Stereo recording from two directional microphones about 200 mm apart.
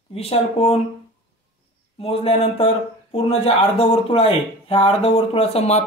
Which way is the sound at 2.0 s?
30° left (ahead or behind).